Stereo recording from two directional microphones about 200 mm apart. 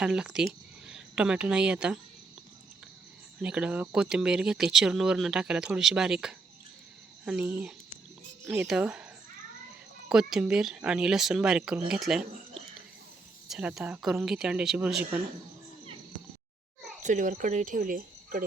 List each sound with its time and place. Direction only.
0.0 s a woman's voice: 5° right (ahead or behind)
3.4 s speech: 5° right (ahead or behind)
10.1 s speech: centre (ahead or behind)
13.5 s speech: 5° right (ahead or behind)
17.0 s speech: 40° right (ahead or behind)